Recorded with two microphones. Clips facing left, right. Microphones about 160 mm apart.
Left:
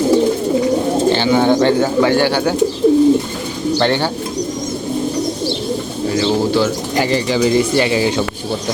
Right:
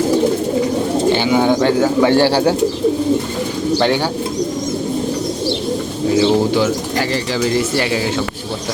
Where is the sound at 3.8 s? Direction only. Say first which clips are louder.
Even; 10° right (ahead or behind).